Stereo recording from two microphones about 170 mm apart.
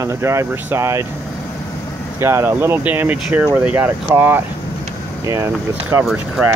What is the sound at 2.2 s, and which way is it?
Speech, 15° right (ahead or behind).